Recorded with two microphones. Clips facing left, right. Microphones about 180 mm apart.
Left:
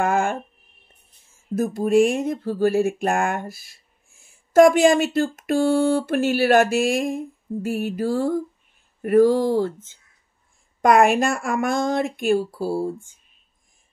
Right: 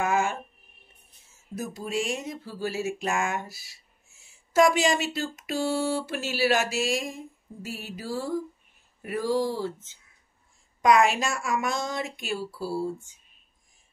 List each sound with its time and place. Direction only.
0.0 s a sound: 55° left (ahead or behind)
1.5 s speech: 50° left (ahead or behind)
10.8 s speech: 55° left (ahead or behind)